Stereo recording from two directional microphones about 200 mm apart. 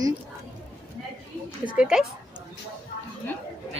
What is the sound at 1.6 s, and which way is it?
Speech, 5° right (ahead or behind).